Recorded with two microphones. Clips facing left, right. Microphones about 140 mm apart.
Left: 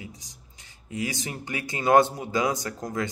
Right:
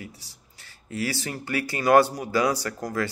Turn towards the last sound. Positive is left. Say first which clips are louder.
# right 2 dB
turn(degrees=20)  # may be behind; listen again after turning